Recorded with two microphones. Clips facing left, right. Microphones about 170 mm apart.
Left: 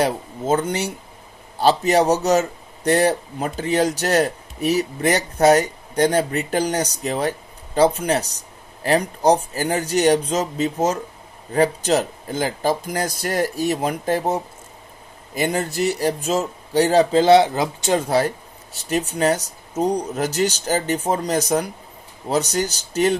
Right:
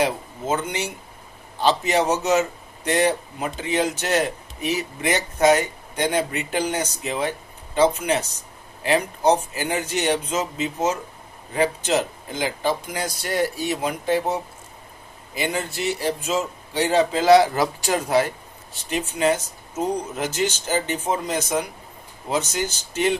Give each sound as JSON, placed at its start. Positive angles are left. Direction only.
{"t": 0.0, "sound": "a man's voice", "side_deg": 40}
{"t": 18.1, "sound": "a man's voice", "side_deg": 40}